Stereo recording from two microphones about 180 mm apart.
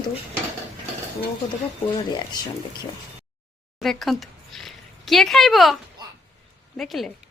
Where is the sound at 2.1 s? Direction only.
25° left (ahead or behind).